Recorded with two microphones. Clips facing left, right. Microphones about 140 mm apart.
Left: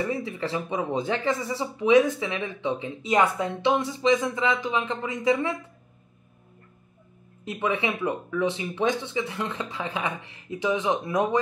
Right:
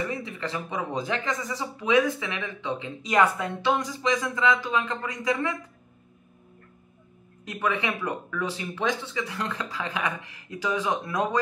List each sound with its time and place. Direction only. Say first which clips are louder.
0.1 s speech: left 3 dB; 30° left (ahead or behind)
7.4 s speech: left 1 dB; 25° left (ahead or behind)